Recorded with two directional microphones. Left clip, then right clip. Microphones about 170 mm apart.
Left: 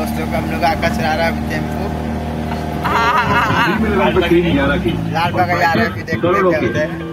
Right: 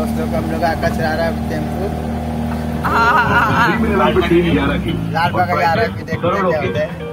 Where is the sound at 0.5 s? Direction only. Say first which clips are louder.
Left 2 dB; 40° right (ahead or behind).